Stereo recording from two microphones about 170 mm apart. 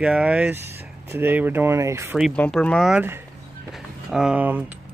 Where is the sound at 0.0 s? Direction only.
5° right (ahead or behind).